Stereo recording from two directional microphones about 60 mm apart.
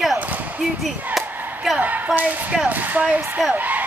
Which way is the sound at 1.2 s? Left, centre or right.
Centre.